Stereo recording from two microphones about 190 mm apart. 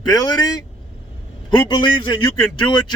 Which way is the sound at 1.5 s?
25° left (ahead or behind).